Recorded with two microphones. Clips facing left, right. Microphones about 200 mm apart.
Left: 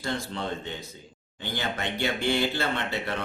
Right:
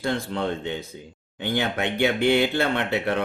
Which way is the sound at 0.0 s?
55° right (ahead or behind).